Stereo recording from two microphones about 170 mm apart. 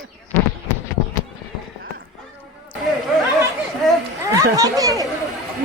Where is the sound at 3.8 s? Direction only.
Centre (ahead or behind).